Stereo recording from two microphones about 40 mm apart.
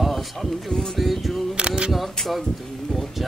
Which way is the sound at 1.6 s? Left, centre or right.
Right.